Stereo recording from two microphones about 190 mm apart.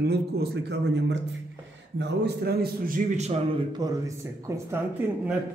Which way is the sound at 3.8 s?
20° right (ahead or behind).